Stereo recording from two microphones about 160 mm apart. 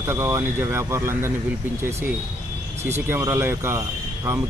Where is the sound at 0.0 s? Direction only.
15° right (ahead or behind).